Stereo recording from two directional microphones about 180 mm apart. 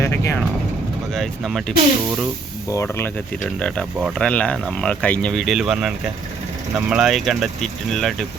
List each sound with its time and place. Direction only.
0.0 s vehicle: 15° left (ahead or behind)
1.1 s speech: centre (ahead or behind)
2.7 s speech: 15° left (ahead or behind)
3.6 s speech: centre (ahead or behind)